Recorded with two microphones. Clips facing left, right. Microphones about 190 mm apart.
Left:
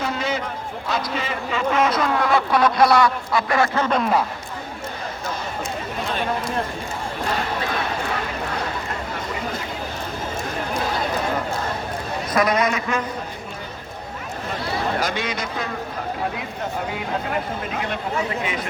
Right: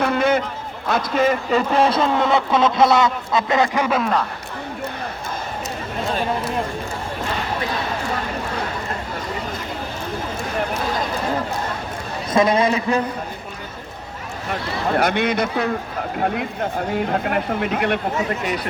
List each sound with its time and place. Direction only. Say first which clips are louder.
0.0 s a sound: right 7 dB; 60° right (ahead or behind)
0.9 s a man's voice: right 8 dB; 50° right (ahead or behind); by 3.8 s 20° right (ahead or behind)
3.8 s a man's voice: right 1 dB; 5° right (ahead or behind)
12.3 s a man's voice: right 4 dB; 25° right (ahead or behind)
14.9 s speech: right 6 dB; 60° right (ahead or behind)
17.2 s speech: right 5 dB; 60° right (ahead or behind)
18.4 s speech: right 3 dB; 35° right (ahead or behind)